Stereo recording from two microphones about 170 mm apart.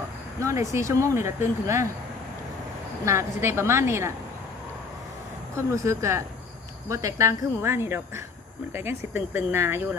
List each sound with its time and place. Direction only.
0.4 s speech: 20° right (ahead or behind)
3.1 s speech: 15° right (ahead or behind)
5.9 s speech: 15° right (ahead or behind)